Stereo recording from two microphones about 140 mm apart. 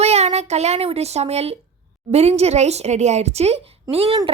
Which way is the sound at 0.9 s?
50° right (ahead or behind).